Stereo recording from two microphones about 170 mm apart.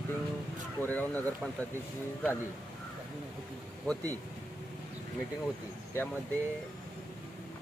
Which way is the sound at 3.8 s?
10° left (ahead or behind).